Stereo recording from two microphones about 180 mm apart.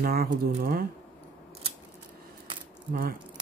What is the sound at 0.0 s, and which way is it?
Speech, 55° right (ahead or behind).